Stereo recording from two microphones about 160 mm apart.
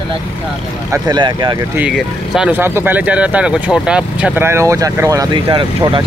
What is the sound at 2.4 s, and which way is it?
Speech, 10° right (ahead or behind).